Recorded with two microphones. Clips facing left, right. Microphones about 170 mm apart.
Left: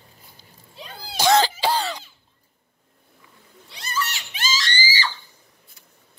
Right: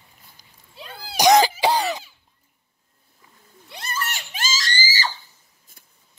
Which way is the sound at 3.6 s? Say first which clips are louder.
Left 2 dB; 55° right (ahead or behind).